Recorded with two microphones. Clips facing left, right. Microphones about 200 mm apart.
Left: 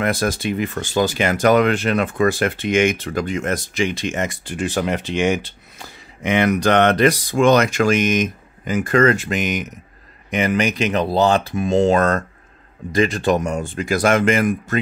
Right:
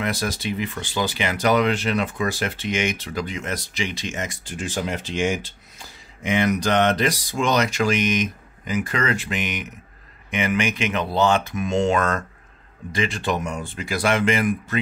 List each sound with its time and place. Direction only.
0.0 s speech: 50° left (ahead or behind)